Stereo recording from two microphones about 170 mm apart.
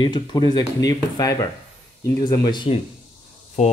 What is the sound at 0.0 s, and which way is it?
Speech, 25° left (ahead or behind).